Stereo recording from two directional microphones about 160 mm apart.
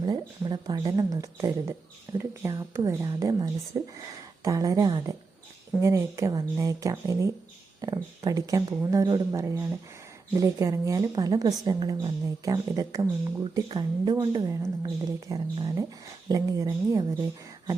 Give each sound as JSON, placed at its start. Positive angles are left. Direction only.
{"t": 0.0, "sound": "a woman's voice", "side_deg": -30}